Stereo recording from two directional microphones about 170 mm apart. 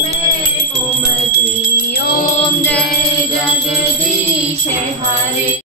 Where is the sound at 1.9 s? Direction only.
70° left (ahead or behind).